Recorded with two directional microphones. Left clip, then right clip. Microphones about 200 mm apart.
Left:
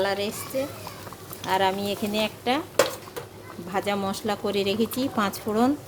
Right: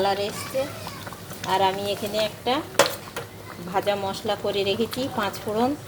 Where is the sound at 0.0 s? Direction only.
20° left (ahead or behind).